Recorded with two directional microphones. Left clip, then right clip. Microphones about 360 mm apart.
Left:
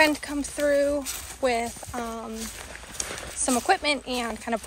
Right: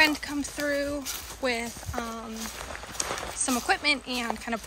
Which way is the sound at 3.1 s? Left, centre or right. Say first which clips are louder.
Right 3 dB; right.